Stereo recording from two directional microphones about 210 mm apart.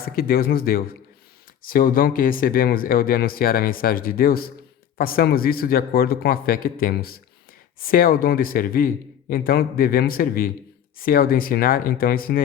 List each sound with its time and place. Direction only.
0.0 s speech: 45° left (ahead or behind)